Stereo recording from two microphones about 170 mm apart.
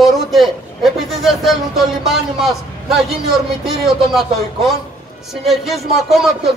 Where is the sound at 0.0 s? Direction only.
Centre (ahead or behind).